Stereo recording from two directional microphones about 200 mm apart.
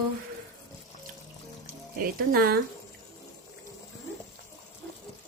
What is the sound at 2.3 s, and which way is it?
Speech, 50° right (ahead or behind).